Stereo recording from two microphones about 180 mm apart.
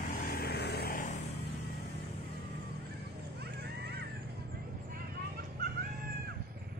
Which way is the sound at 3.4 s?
60° right (ahead or behind).